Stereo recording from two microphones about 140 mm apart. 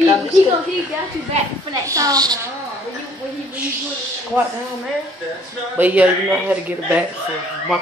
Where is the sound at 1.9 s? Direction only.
25° right (ahead or behind).